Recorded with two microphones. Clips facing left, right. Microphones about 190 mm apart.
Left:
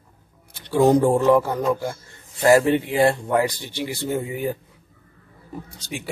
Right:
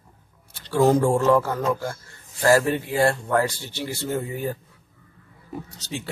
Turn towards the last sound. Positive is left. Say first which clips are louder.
# even
turn(degrees=15)  # may be behind; listen again after turning